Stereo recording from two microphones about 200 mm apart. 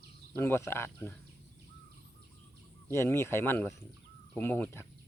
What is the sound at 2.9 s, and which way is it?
Speech, 15° left (ahead or behind).